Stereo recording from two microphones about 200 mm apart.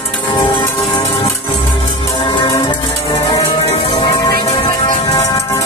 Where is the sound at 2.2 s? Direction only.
25° left (ahead or behind).